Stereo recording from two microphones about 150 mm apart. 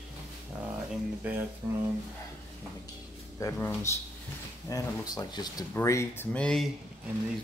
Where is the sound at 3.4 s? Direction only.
15° left (ahead or behind).